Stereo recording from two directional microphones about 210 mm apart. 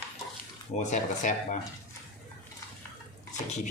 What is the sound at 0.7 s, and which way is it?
Speech, 35° left (ahead or behind).